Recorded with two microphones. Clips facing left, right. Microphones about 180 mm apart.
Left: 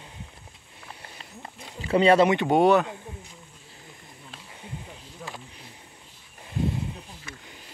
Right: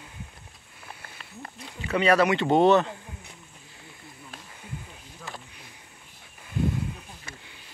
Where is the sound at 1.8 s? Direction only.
30° left (ahead or behind).